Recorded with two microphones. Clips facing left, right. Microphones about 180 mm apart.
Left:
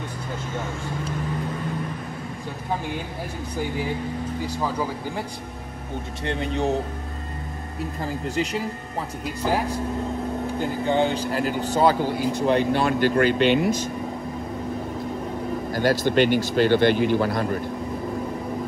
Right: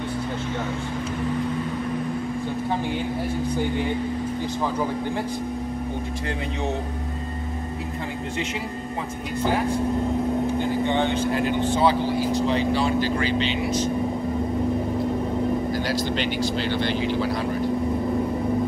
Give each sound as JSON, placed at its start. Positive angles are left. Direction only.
{"t": 3.5, "sound": "speech", "side_deg": 5}
{"t": 10.9, "sound": "speech", "side_deg": 35}
{"t": 15.7, "sound": "speech", "side_deg": 50}